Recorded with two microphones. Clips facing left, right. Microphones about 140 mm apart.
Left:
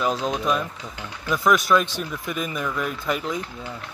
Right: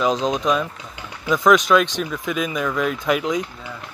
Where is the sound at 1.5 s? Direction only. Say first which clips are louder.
Right 4 dB; 90° right.